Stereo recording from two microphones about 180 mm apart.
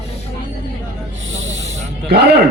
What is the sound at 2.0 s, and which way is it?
Speech, 65° right (ahead or behind).